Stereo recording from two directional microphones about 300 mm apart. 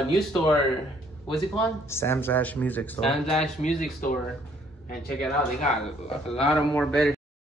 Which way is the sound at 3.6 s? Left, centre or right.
Left.